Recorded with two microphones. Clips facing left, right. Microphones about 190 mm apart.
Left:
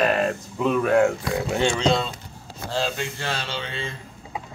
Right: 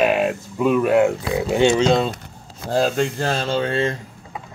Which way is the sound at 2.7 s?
45° right (ahead or behind).